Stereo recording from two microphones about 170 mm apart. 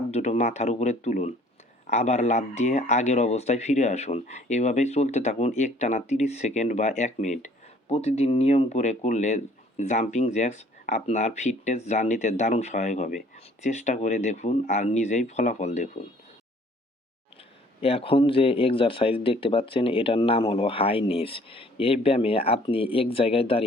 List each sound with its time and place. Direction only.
0.1 s speech: 40° left (ahead or behind)
17.7 s speech: 35° left (ahead or behind)